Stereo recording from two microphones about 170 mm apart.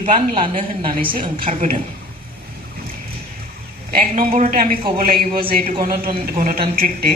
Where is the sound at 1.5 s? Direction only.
45° right (ahead or behind).